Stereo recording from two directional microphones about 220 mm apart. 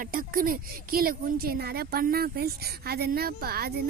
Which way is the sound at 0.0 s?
40° right (ahead or behind).